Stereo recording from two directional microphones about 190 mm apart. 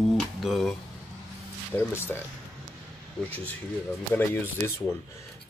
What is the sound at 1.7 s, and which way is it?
Speech, 10° left (ahead or behind).